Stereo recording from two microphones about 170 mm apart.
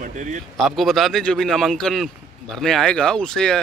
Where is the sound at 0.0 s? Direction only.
45° right (ahead or behind).